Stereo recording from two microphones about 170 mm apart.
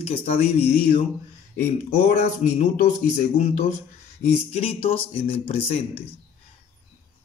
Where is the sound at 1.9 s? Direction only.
40° left (ahead or behind).